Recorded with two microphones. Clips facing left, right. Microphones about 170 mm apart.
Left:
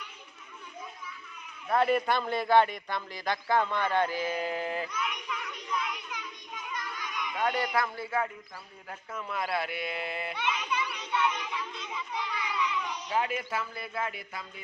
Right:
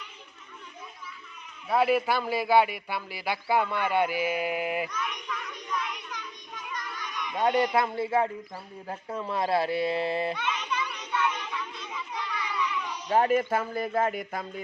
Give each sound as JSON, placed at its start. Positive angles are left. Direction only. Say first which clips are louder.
{"t": 1.6, "sound": "a man's voice", "louder": "right 2 dB", "side_deg": -5}
{"t": 4.9, "sound": "child singing", "louder": "right 1 dB", "side_deg": 10}
{"t": 7.3, "sound": "speech", "louder": "right 5 dB", "side_deg": -25}
{"t": 10.3, "sound": "children playing", "louder": "even", "side_deg": 15}
{"t": 10.8, "sound": "child singing", "louder": "even", "side_deg": 10}
{"t": 13.1, "sound": "speech", "louder": "right 9 dB", "side_deg": -45}